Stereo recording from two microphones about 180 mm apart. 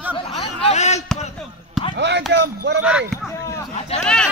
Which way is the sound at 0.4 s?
35° left (ahead or behind).